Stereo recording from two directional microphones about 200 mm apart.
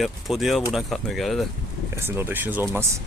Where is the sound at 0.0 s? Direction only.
Centre (ahead or behind).